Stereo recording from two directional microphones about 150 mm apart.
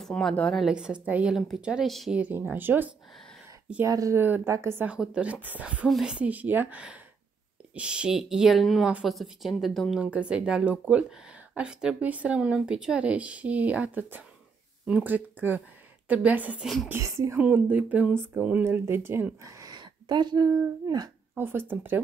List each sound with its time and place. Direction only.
0.0 s a woman's voice: 5° left (ahead or behind)
16.9 s speech: 20° right (ahead or behind)
21.4 s speech: 15° right (ahead or behind)